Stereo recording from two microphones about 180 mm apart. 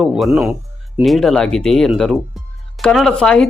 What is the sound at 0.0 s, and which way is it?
Speech, centre (ahead or behind).